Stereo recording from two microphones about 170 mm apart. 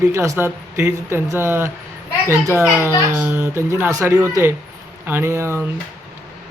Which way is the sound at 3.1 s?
10° right (ahead or behind).